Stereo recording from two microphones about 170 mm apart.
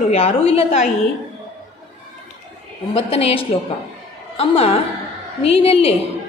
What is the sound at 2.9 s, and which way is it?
A woman's voice, 35° left (ahead or behind).